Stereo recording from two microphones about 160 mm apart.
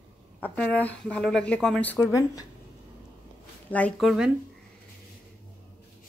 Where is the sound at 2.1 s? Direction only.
20° left (ahead or behind).